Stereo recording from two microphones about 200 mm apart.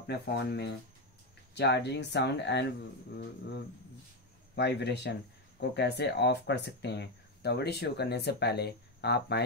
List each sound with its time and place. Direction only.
0.0 s speech: 60° left (ahead or behind)
4.6 s speech: 55° left (ahead or behind)